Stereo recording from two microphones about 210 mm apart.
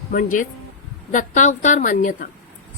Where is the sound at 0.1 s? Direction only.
40° left (ahead or behind).